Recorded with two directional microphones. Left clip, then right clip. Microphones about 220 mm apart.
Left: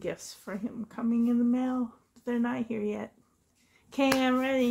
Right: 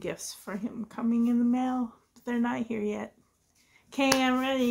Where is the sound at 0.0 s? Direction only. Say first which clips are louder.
Even; 10° right (ahead or behind).